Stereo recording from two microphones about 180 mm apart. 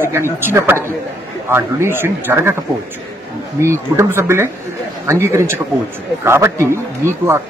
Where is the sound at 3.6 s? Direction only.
15° right (ahead or behind).